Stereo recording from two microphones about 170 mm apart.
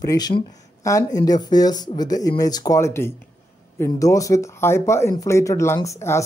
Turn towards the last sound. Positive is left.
turn(degrees=15)  # may be behind; listen again after turning